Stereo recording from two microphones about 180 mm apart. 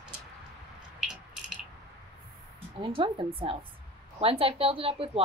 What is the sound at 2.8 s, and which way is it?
A woman's voice, 30° right (ahead or behind).